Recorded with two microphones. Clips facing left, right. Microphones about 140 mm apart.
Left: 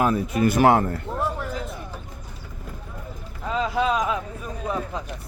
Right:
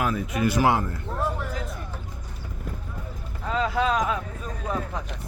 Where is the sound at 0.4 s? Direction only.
50° left (ahead or behind).